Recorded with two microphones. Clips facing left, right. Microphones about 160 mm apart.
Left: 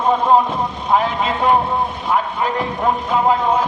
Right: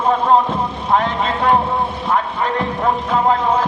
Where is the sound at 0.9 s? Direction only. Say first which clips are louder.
Even; 5° left (ahead or behind).